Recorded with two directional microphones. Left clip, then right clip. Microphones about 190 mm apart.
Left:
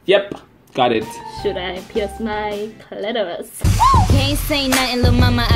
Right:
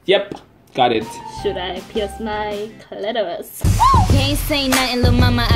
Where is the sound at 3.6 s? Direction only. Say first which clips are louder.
Even; centre (ahead or behind).